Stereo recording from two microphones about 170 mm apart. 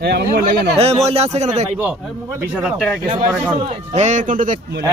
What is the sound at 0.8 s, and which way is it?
Speech, 40° right (ahead or behind).